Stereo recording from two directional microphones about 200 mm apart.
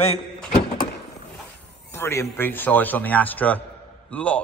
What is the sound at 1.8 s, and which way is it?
A man's voice, 15° left (ahead or behind).